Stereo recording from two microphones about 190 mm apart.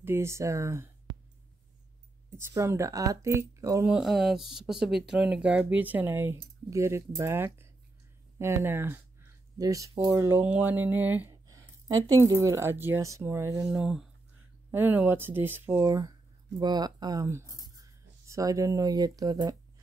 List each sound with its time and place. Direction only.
0.0 s speech: 15° right (ahead or behind)
2.3 s speech: 15° right (ahead or behind)
3.8 s speech: 5° right (ahead or behind)
13.7 s speech: centre (ahead or behind); by 19.5 s 20° right (ahead or behind)